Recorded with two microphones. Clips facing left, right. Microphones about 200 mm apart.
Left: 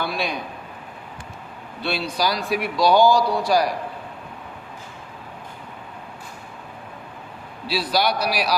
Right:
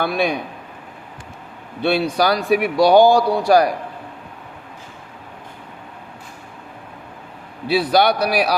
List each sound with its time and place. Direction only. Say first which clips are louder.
0.0 s speech: right 6 dB; 55° right (ahead or behind)
1.8 s speech: right 7 dB; 55° right (ahead or behind)
7.7 s speech: right 6 dB; 55° right (ahead or behind)